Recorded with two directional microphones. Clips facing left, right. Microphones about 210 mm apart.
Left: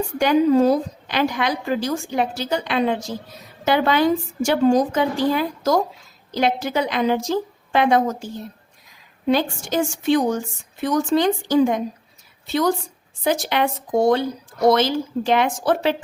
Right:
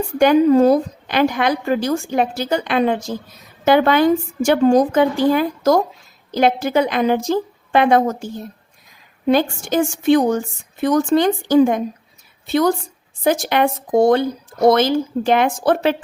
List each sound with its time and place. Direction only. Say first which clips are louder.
0.2 s a woman's voice: right 4 dB; 55° right (ahead or behind)
9.2 s a woman's voice: right 3 dB; 50° right (ahead or behind)